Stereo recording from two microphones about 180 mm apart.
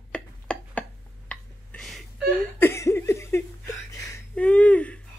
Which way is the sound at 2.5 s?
15° left (ahead or behind).